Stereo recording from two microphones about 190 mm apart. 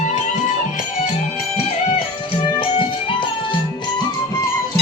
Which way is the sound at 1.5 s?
30° left (ahead or behind).